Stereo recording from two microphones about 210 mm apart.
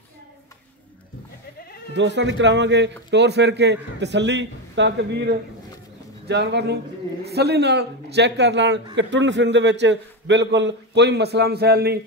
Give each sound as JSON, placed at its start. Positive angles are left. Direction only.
{"t": 2.0, "sound": "a man's voice", "side_deg": -60}